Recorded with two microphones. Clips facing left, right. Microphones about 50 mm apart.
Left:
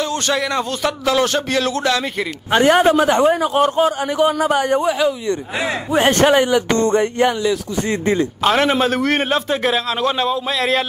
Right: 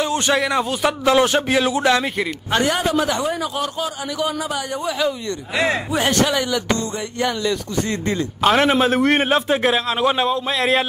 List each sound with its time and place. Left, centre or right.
0.0 s a sound: centre
0.4 s a man's voice: centre
2.6 s a man's voice: left
5.9 s a man's voice: left
6.8 s music: left
7.4 s speech: centre
8.4 s a man's voice: centre